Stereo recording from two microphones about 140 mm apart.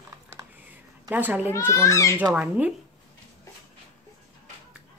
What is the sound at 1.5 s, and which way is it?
Speech, 20° left (ahead or behind).